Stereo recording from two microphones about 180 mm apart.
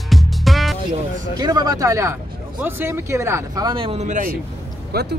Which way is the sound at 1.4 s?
20° right (ahead or behind).